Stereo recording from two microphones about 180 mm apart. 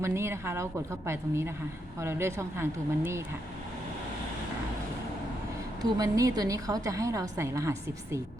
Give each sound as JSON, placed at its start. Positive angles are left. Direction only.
{"t": 0.0, "sound": "a woman's voice", "side_deg": -15}
{"t": 5.8, "sound": "a woman's voice", "side_deg": -20}